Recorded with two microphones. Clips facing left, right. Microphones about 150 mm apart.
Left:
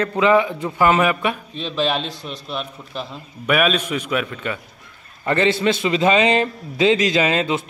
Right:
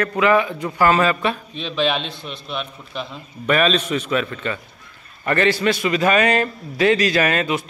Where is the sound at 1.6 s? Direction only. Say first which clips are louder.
Even; centre (ahead or behind).